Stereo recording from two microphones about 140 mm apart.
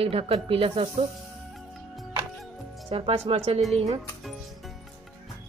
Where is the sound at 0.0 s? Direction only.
45° right (ahead or behind).